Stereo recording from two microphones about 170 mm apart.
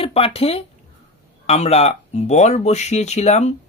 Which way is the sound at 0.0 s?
35° left (ahead or behind).